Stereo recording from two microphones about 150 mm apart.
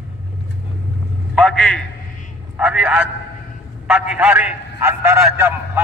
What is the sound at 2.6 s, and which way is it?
A man's voice, 5° right (ahead or behind).